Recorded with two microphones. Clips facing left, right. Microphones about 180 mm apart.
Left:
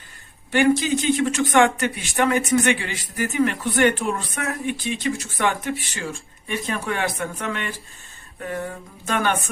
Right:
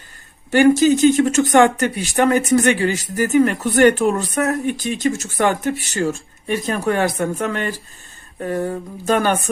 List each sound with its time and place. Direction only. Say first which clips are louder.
0.5 s speech: right 6 dB; 40° right (ahead or behind)